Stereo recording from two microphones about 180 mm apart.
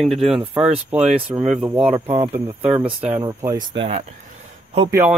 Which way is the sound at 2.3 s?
10° right (ahead or behind).